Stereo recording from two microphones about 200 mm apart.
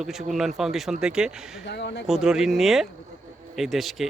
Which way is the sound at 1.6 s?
60° left (ahead or behind).